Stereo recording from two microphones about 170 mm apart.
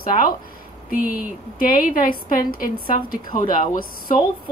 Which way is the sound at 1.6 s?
55° left (ahead or behind).